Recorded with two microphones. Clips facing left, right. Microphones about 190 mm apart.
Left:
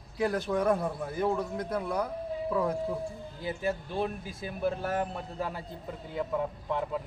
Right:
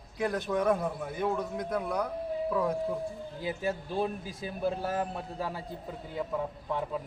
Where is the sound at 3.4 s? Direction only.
15° right (ahead or behind).